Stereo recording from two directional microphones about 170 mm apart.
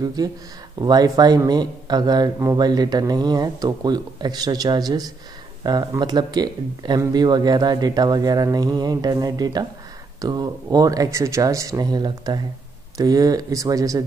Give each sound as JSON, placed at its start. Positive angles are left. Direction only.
{"t": 0.0, "sound": "speech", "side_deg": -20}